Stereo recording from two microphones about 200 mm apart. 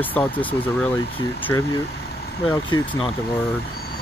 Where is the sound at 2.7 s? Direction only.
25° left (ahead or behind).